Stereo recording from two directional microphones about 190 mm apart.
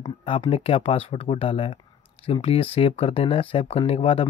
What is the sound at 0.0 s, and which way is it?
Speech, 25° left (ahead or behind).